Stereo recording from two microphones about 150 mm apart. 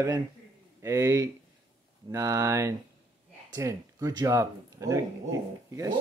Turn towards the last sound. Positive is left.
turn(degrees=-20)  # may be behind; listen again after turning